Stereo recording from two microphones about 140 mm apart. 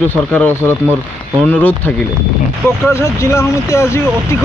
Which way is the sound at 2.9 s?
20° left (ahead or behind).